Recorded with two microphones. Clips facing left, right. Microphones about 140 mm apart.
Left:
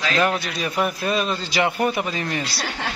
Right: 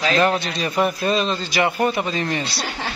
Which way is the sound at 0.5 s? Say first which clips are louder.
Right 2 dB; centre (ahead or behind).